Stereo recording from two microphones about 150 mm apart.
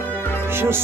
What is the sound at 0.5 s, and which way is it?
Speech, 15° right (ahead or behind).